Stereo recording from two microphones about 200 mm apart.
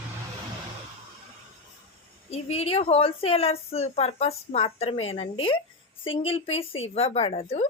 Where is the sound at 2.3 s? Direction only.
30° left (ahead or behind).